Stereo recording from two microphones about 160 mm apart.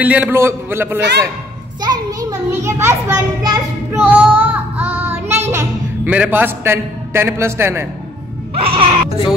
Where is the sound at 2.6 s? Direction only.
15° right (ahead or behind).